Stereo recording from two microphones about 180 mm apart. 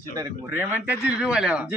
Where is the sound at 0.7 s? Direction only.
5° right (ahead or behind).